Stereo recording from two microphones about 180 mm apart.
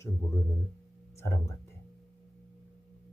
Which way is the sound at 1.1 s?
15° left (ahead or behind).